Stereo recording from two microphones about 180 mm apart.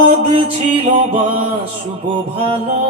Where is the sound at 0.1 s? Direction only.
35° right (ahead or behind).